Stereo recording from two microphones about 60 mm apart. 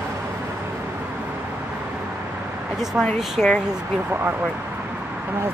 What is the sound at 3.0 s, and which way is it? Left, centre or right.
Speech, centre.